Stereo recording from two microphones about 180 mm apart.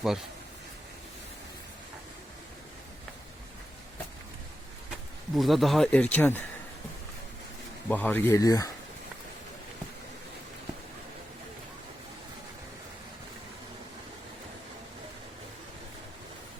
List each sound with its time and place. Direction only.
5.3 s speech: centre (ahead or behind)
7.9 s speech: 10° left (ahead or behind)